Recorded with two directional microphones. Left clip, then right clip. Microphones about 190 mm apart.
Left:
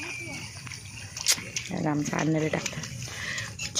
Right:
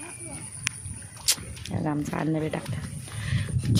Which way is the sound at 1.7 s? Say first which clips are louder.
Even; 5° right (ahead or behind).